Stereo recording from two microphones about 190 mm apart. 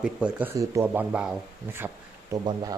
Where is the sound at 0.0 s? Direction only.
5° right (ahead or behind).